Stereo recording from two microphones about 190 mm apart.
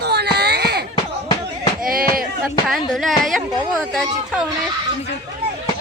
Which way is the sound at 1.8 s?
50° right (ahead or behind).